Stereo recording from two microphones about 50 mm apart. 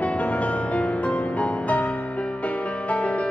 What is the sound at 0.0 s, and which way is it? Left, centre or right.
Music, left.